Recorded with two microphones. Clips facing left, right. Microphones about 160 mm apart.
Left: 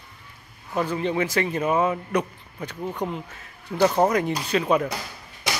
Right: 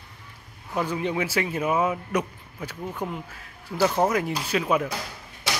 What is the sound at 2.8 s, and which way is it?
Speech, 15° left (ahead or behind).